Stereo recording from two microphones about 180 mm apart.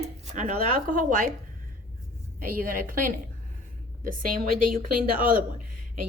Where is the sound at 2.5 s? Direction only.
50° right (ahead or behind).